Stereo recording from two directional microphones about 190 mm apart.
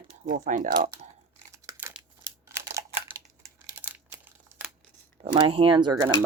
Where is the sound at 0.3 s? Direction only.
40° right (ahead or behind).